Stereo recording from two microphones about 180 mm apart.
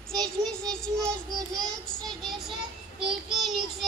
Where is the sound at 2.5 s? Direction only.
30° right (ahead or behind).